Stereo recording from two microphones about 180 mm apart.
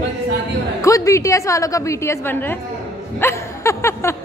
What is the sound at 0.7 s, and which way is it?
Speech, 15° left (ahead or behind).